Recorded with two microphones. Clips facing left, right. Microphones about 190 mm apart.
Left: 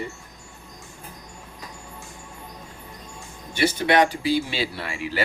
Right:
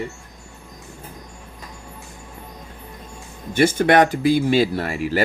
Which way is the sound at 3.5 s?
50° right (ahead or behind).